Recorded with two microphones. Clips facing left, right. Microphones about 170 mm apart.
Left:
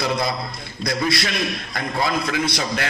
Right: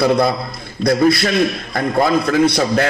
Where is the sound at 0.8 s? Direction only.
55° right (ahead or behind).